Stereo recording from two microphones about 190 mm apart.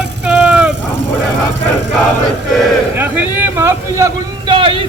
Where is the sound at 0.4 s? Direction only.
5° right (ahead or behind).